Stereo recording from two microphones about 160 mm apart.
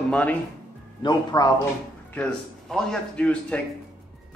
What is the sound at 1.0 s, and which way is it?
Speech, 25° left (ahead or behind).